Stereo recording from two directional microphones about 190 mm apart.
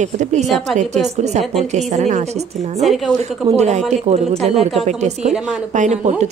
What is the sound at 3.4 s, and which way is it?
A woman's voice, 35° right (ahead or behind).